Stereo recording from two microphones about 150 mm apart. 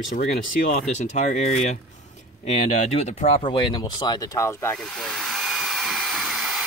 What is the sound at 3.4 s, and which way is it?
Speech, 30° left (ahead or behind).